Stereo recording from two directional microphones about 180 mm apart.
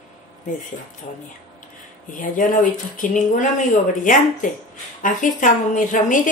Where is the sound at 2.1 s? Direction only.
45° left (ahead or behind).